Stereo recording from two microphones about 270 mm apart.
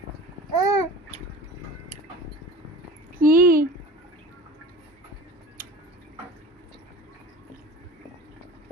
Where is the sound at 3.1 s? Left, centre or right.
Right.